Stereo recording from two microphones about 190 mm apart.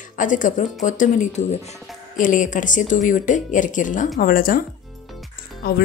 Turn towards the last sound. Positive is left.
turn(degrees=50)  # may be behind; listen again after turning